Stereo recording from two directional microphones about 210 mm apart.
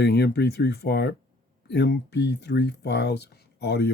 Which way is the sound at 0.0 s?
50° left (ahead or behind).